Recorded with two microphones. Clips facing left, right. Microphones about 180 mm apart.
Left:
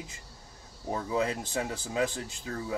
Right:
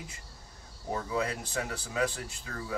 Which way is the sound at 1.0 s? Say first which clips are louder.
Left 5 dB; 25° left (ahead or behind).